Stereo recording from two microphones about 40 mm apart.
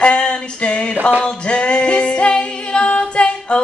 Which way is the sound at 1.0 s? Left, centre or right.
Right.